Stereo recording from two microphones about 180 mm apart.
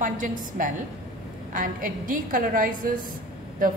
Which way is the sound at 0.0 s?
50° right (ahead or behind).